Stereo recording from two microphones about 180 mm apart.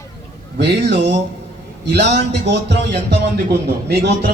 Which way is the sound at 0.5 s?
70° right (ahead or behind).